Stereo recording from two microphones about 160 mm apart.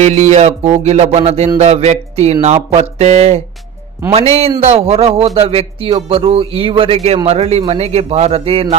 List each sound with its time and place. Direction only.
0.0 s speech: 45° right (ahead or behind)